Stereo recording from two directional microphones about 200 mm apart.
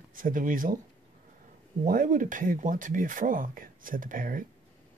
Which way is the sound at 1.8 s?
40° right (ahead or behind).